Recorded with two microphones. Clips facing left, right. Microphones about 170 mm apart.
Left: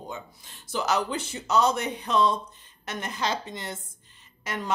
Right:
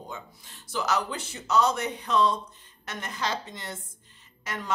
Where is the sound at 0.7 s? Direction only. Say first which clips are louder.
Left 2 dB; 25° left (ahead or behind).